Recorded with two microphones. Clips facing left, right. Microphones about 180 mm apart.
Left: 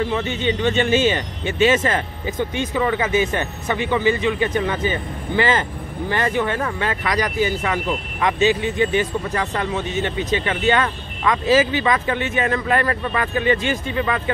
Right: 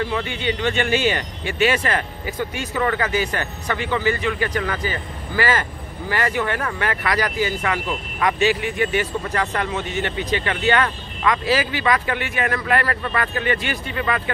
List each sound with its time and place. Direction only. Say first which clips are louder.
0.1 s speech: left 3 dB; 20° left (ahead or behind)